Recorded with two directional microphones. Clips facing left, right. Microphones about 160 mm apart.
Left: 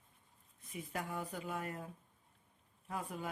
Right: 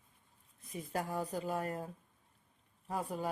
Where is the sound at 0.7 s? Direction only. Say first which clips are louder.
Right 4 dB; 35° right (ahead or behind).